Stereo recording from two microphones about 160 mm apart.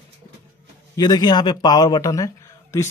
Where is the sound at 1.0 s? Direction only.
25° left (ahead or behind).